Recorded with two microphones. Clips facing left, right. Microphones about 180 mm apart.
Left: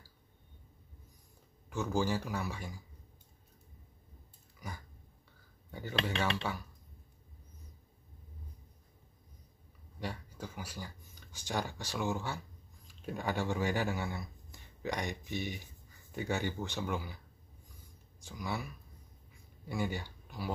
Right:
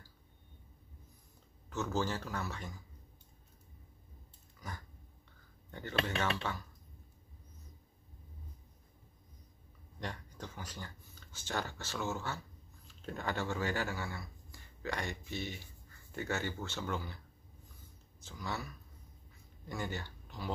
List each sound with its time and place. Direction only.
1.7 s speech: 10° left (ahead or behind)
4.6 s dog: 10° left (ahead or behind)
5.7 s speech: 10° left (ahead or behind)
9.9 s speech: 10° left (ahead or behind)
18.2 s speech: 10° left (ahead or behind)